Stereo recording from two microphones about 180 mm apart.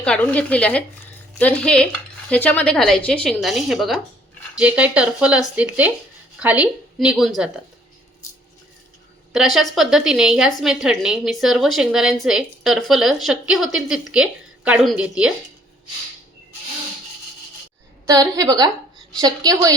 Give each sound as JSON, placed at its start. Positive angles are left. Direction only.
{"t": 0.0, "sound": "a woman's voice", "side_deg": 5}
{"t": 9.3, "sound": "a woman's voice", "side_deg": 0}
{"t": 18.0, "sound": "a woman's voice", "side_deg": -20}